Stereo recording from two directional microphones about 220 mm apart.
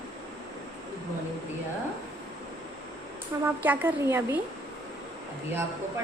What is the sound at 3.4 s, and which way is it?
Speech, 10° right (ahead or behind).